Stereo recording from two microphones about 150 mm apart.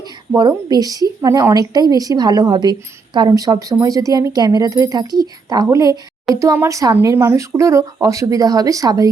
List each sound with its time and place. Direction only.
0.3 s a woman's voice: 30° right (ahead or behind)